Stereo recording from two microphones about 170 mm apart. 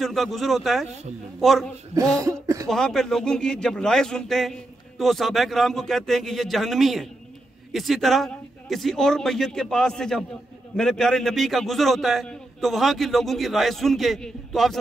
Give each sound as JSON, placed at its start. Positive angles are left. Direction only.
{"t": 0.0, "sound": "speech", "side_deg": 0}
{"t": 2.1, "sound": "speech", "side_deg": -20}
{"t": 2.7, "sound": "speech", "side_deg": 0}